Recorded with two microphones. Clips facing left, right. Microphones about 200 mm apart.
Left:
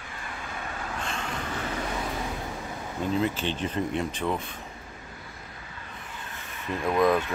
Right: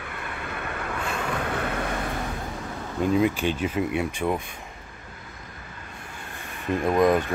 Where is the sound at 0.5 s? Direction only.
65° right (ahead or behind).